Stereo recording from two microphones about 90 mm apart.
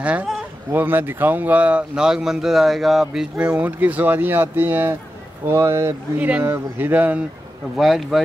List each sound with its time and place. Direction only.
0.0 s speech: 15° right (ahead or behind)
3.3 s speech: 15° right (ahead or behind)
6.1 s speech: 15° right (ahead or behind)
7.7 s speech: centre (ahead or behind)